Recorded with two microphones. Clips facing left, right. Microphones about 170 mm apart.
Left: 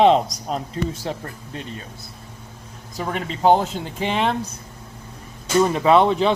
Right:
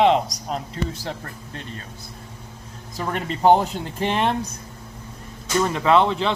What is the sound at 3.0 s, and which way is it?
Speech, centre (ahead or behind).